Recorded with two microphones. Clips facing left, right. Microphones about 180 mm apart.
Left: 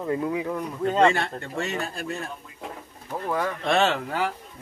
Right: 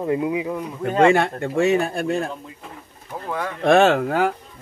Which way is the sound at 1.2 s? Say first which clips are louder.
Right 9 dB; 50° right (ahead or behind).